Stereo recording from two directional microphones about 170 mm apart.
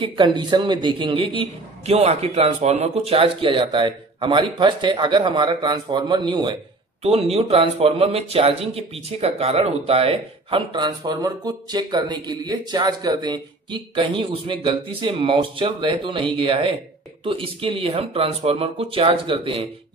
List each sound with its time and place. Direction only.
0.2 s a man's voice: 25° right (ahead or behind)